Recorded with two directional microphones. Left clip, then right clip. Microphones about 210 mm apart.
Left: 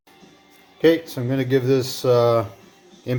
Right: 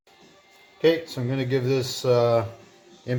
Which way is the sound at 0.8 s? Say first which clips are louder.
Left 4 dB; 25° left (ahead or behind).